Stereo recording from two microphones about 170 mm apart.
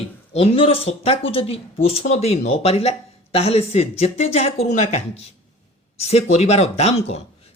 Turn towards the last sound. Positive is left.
turn(degrees=40)  # may be behind; listen again after turning